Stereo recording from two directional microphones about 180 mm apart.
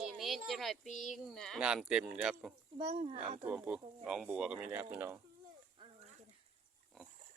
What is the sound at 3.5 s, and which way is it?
Speech, 5° right (ahead or behind).